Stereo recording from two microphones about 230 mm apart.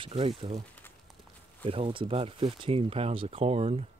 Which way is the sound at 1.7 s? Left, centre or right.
Right.